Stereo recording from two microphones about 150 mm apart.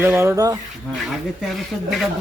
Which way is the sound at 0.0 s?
15° right (ahead or behind).